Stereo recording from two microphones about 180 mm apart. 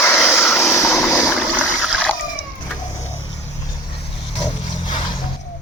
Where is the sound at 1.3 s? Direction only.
5° left (ahead or behind).